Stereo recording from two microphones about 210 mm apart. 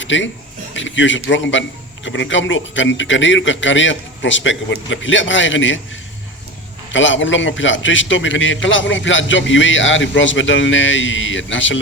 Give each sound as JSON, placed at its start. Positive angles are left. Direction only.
{"t": 0.0, "sound": "a man's voice", "side_deg": 65}
{"t": 6.9, "sound": "a man's voice", "side_deg": 65}